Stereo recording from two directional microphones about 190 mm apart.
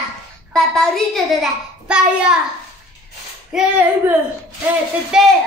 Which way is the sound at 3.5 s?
5° right (ahead or behind).